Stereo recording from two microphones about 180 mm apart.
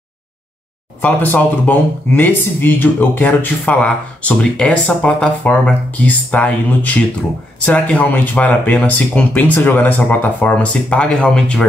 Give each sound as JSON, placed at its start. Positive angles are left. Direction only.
{"t": 1.0, "sound": "speech", "side_deg": 10}